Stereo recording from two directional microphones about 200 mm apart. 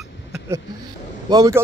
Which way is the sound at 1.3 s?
20° right (ahead or behind).